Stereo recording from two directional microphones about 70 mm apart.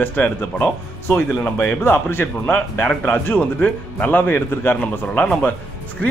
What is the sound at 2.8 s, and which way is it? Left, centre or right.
Speech, centre.